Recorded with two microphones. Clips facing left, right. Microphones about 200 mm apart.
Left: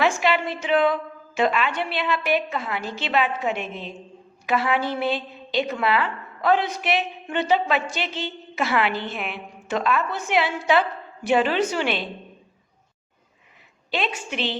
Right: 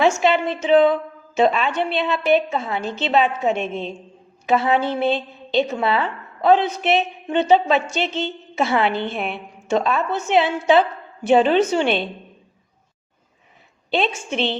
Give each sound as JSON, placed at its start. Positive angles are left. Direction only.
{"t": 0.2, "sound": "a woman's voice", "side_deg": -25}
{"t": 13.9, "sound": "a woman's voice", "side_deg": -25}